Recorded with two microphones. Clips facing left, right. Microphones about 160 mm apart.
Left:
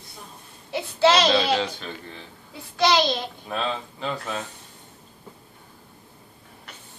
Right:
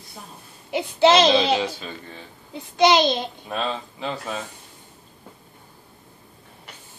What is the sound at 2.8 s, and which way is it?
Speech, 20° right (ahead or behind).